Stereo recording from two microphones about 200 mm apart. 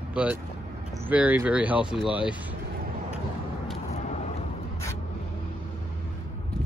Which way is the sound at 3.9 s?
35° left (ahead or behind).